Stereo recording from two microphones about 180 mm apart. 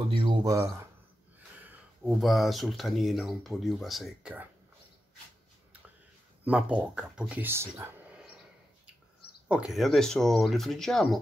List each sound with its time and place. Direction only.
0.1 s speech: 25° right (ahead or behind)
2.0 s speech: centre (ahead or behind)
6.4 s speech: 10° right (ahead or behind)
9.5 s speech: 5° right (ahead or behind)